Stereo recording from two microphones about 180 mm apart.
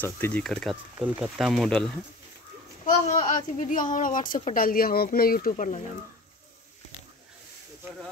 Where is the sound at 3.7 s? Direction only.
50° left (ahead or behind).